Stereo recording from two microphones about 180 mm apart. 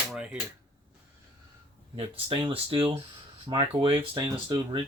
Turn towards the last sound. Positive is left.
turn(degrees=-20)  # may be behind; listen again after turning